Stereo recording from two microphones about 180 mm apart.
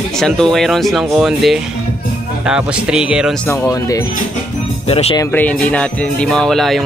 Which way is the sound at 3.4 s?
15° left (ahead or behind).